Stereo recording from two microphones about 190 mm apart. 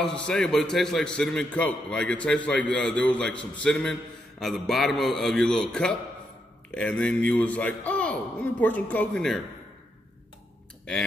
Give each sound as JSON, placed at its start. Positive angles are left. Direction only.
{"t": 0.0, "sound": "a man's voice", "side_deg": 5}